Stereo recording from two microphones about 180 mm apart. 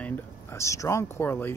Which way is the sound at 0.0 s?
15° left (ahead or behind).